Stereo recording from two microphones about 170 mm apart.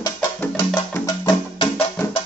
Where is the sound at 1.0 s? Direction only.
25° left (ahead or behind).